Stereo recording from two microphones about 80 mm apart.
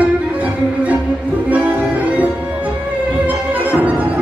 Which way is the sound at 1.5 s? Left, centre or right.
Centre.